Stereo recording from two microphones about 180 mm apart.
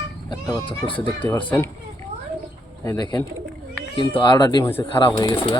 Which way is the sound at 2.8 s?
20° left (ahead or behind).